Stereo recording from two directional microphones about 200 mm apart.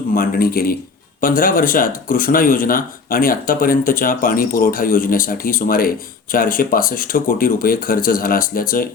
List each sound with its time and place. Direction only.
0.1 s speech: 45° left (ahead or behind)